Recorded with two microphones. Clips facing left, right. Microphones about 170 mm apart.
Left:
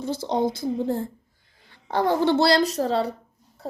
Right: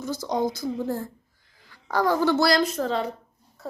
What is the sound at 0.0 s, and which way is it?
A woman's voice, 30° left (ahead or behind).